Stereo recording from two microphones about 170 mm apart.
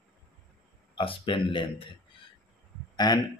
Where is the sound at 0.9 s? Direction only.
30° left (ahead or behind).